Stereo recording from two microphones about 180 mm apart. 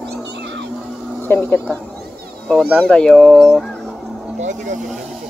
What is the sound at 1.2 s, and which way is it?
Speech, 10° left (ahead or behind).